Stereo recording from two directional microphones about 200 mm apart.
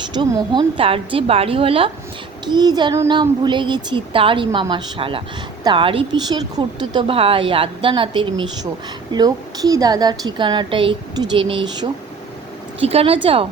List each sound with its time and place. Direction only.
0.1 s speech: 25° right (ahead or behind)